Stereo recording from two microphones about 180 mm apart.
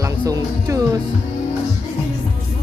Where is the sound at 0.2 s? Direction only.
20° right (ahead or behind).